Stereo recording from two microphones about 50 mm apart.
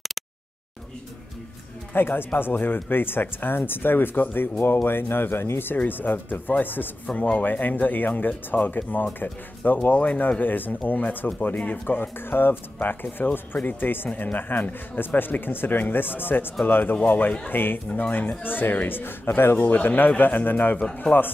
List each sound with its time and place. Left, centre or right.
2.0 s speech: left
5.9 s speech: left